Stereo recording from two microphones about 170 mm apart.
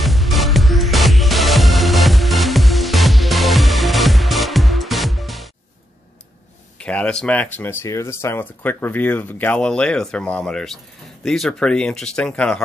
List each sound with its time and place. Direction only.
0.0 s music: centre (ahead or behind)
6.8 s speech: 5° left (ahead or behind)